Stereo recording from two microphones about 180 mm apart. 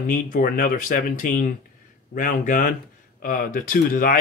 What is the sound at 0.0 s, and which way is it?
Speech, 50° left (ahead or behind).